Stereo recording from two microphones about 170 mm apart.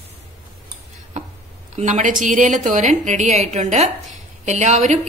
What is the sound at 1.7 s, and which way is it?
A woman's voice, 45° right (ahead or behind).